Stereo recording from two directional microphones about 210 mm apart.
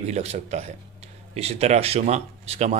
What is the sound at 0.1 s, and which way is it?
Speech, 30° right (ahead or behind).